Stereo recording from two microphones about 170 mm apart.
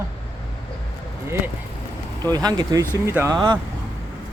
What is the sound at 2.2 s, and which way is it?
Speech, 20° right (ahead or behind).